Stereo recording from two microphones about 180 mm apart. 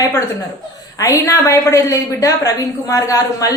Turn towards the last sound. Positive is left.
turn(degrees=20)  # may be behind; listen again after turning